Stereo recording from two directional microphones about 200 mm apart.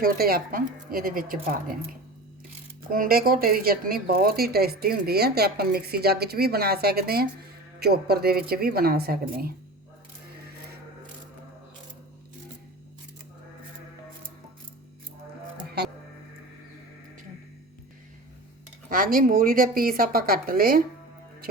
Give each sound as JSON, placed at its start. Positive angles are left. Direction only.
{"t": 0.0, "sound": "speech", "side_deg": -45}
{"t": 18.9, "sound": "speech", "side_deg": -45}